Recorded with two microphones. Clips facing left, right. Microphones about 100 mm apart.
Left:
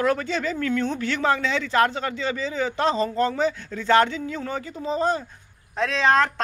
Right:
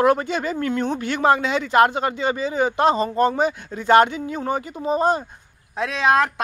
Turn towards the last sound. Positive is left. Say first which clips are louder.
# right 1 dB
turn(degrees=-10)  # may be behind; listen again after turning